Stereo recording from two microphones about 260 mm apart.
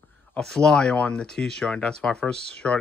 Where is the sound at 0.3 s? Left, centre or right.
Centre.